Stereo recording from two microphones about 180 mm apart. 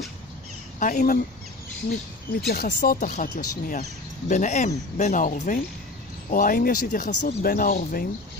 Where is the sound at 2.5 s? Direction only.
55° left (ahead or behind).